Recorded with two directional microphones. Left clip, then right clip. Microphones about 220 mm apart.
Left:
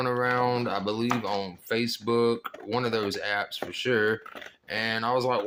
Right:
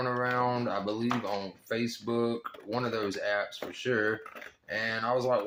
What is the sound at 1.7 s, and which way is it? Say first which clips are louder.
Speech: left 6 dB; 45° left (ahead or behind).